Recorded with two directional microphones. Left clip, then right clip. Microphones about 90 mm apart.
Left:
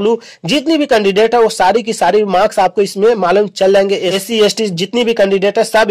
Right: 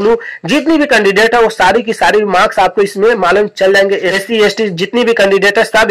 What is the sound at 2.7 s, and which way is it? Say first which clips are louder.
Speech: right 2 dB; 35° left (ahead or behind).